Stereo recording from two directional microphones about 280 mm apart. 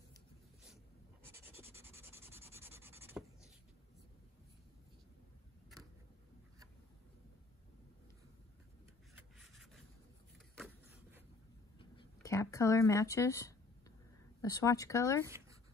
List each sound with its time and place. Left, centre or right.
1.3 s rub: centre
10.6 s vehicle: centre
11.8 s a sound: centre
14.4 s speech: centre